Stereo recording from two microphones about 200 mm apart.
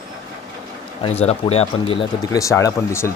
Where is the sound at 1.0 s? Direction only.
30° left (ahead or behind).